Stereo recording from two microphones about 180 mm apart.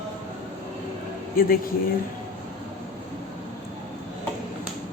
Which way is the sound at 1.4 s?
55° left (ahead or behind).